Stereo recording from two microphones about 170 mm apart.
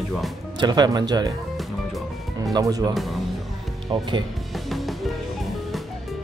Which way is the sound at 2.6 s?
20° right (ahead or behind).